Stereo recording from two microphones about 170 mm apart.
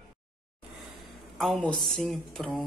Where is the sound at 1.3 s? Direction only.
Centre (ahead or behind).